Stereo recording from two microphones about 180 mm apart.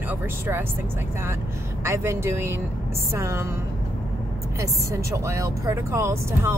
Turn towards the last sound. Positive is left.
turn(degrees=-15)  # may be behind; listen again after turning